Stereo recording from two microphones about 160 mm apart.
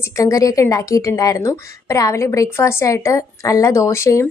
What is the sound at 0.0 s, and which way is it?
A woman's voice, 20° left (ahead or behind).